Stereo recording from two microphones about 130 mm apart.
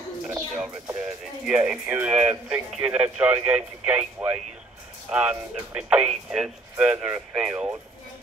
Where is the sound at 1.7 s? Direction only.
10° right (ahead or behind).